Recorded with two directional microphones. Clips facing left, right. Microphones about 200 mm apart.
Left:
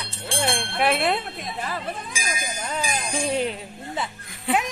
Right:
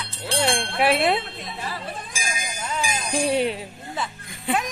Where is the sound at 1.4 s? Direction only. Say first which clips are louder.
Left 2 dB; 50° left (ahead or behind).